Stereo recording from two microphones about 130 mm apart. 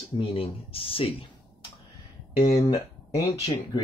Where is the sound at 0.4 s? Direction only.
45° left (ahead or behind).